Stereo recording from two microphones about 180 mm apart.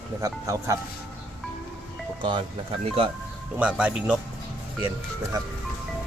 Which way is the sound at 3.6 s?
5° right (ahead or behind).